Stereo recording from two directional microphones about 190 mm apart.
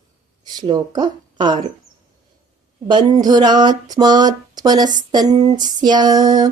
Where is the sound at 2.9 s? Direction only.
20° right (ahead or behind).